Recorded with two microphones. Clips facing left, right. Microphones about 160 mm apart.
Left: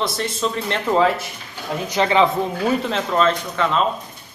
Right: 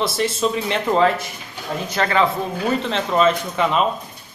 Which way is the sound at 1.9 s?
15° left (ahead or behind).